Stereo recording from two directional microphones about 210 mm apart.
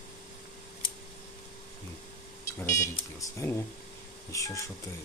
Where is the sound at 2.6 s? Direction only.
15° left (ahead or behind).